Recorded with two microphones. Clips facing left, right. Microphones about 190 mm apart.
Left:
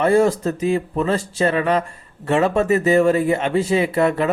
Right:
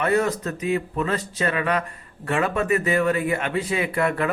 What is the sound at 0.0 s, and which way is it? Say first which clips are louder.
A man's voice: left 6 dB; 30° left (ahead or behind).